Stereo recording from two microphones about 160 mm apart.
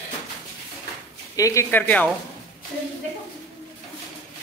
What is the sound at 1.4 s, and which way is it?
Speech, 20° left (ahead or behind).